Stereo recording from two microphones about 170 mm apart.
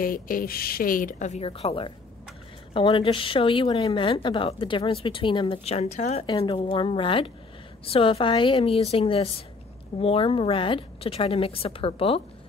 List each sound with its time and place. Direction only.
0.0 s a woman's voice: 55° left (ahead or behind); by 6.2 s 40° left (ahead or behind)
6.2 s a woman's voice: 25° left (ahead or behind)